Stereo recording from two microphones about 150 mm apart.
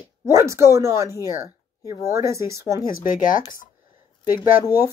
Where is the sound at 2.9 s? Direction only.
60° left (ahead or behind).